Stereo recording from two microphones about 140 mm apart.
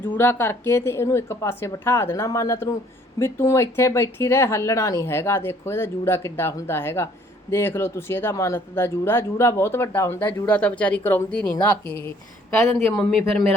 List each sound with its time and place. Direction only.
0.1 s speech: 20° left (ahead or behind)
13.1 s speech: centre (ahead or behind)